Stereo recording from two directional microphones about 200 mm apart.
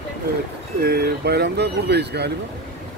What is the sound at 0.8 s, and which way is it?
Speech, 50° right (ahead or behind).